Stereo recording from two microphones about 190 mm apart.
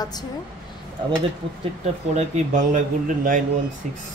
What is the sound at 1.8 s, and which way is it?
A man's voice, 40° right (ahead or behind).